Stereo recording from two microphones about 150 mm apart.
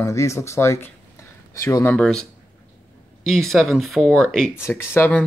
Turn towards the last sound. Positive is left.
turn(degrees=15)  # may be behind; listen again after turning